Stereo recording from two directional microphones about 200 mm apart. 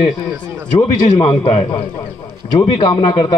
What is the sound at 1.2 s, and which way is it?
Speech, 25° left (ahead or behind).